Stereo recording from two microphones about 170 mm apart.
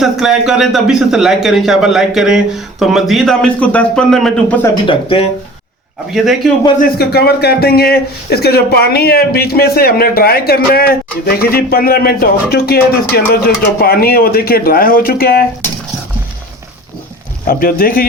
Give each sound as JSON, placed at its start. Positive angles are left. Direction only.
{"t": 0.0, "sound": "a man's voice", "side_deg": 0}
{"t": 4.7, "sound": "speech", "side_deg": 30}
{"t": 6.1, "sound": "a man's voice", "side_deg": 0}
{"t": 6.7, "sound": "a man's voice", "side_deg": 65}
{"t": 17.4, "sound": "a man's voice", "side_deg": 60}